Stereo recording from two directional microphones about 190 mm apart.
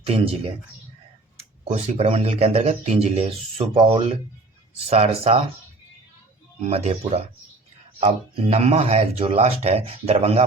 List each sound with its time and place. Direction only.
1.6 s speech: 35° right (ahead or behind)
6.6 s speech: 35° right (ahead or behind)